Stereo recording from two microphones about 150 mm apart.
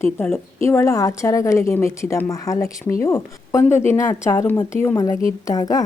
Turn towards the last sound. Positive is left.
turn(degrees=25)  # may be behind; listen again after turning